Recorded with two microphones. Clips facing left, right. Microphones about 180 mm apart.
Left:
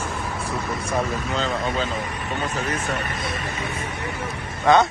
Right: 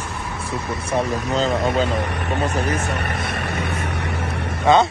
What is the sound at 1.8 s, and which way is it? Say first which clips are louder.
Speech: right 5 dB; 75° right (ahead or behind).